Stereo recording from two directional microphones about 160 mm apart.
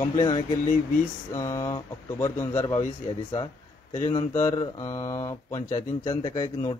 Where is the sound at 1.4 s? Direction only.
20° left (ahead or behind).